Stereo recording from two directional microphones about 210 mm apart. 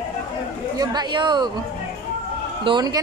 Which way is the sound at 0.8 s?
20° right (ahead or behind).